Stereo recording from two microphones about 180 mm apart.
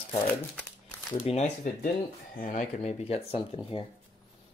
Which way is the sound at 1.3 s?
35° left (ahead or behind).